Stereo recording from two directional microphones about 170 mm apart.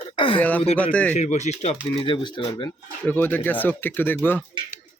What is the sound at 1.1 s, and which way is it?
Speech, 45° left (ahead or behind).